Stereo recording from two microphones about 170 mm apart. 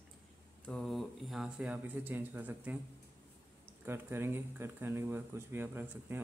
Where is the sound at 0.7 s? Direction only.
Centre (ahead or behind).